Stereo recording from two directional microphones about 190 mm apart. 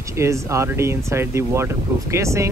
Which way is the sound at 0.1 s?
15° right (ahead or behind).